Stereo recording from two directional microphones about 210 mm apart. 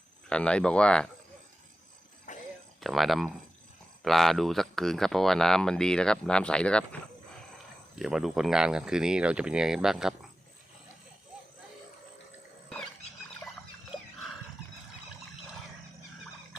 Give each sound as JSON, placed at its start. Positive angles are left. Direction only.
{"t": 0.3, "sound": "speech", "side_deg": 5}
{"t": 2.3, "sound": "music", "side_deg": 35}
{"t": 2.8, "sound": "speech", "side_deg": 0}
{"t": 7.9, "sound": "speech", "side_deg": 0}